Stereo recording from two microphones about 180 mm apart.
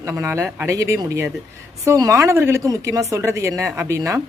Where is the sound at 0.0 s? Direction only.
15° right (ahead or behind).